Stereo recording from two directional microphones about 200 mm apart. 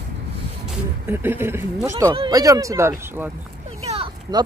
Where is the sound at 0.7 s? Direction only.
10° right (ahead or behind).